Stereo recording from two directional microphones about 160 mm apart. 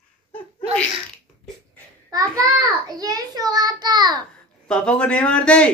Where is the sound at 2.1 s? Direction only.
20° right (ahead or behind).